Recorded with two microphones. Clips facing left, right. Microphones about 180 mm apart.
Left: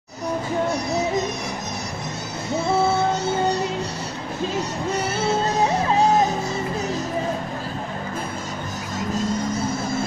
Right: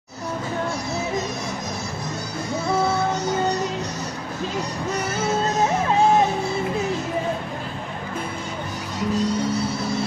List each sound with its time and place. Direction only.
9.1 s music: 50° left (ahead or behind)